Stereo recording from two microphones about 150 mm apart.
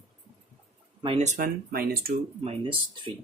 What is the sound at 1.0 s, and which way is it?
Speech, 35° right (ahead or behind).